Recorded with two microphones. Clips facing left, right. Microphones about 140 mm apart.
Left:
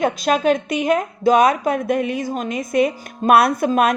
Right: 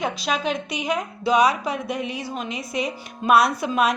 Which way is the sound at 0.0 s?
50° left (ahead or behind).